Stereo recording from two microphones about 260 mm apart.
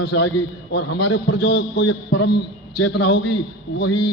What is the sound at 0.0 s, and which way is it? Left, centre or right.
Speech, left.